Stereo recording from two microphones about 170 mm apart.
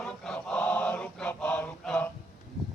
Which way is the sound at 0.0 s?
5° left (ahead or behind).